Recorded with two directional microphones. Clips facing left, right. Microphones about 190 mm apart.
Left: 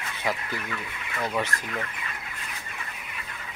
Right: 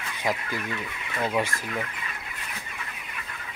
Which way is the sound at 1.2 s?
10° right (ahead or behind).